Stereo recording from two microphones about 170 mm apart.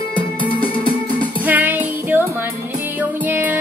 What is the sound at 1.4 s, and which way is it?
Music, 10° right (ahead or behind).